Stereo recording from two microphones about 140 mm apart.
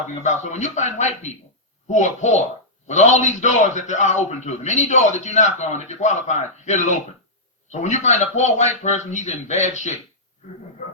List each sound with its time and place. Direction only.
0.1 s a man's voice: 55° left (ahead or behind)